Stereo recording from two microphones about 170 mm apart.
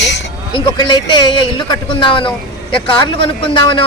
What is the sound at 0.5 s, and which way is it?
Speech, 25° left (ahead or behind).